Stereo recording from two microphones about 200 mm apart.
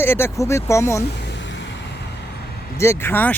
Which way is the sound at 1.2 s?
65° left (ahead or behind).